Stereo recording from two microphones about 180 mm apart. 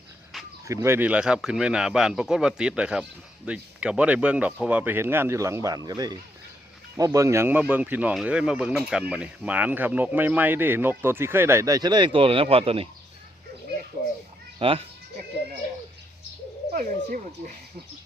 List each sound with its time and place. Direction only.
0.7 s speech: 15° right (ahead or behind); by 12.9 s 30° right (ahead or behind)
14.6 s speech: 30° right (ahead or behind)
16.7 s speech: 50° right (ahead or behind)